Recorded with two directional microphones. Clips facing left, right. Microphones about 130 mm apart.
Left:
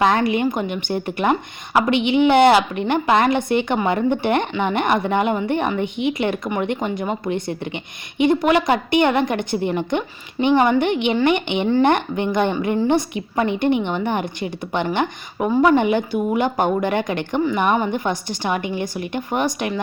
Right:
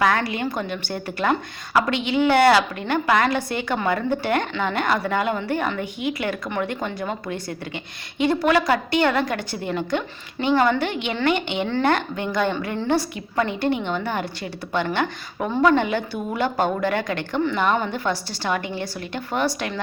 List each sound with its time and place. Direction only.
0.0 s a woman's voice: 20° left (ahead or behind)